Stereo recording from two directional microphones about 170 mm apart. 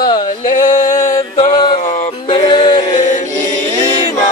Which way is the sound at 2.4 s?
30° left (ahead or behind).